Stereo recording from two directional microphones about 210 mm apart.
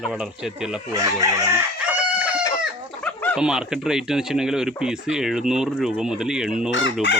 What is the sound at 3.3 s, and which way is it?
Speech, 5° right (ahead or behind).